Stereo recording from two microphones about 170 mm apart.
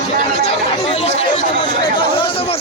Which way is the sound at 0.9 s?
35° left (ahead or behind).